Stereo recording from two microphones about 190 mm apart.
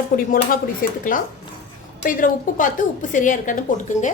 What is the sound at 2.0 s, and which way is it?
A woman's voice, 45° left (ahead or behind).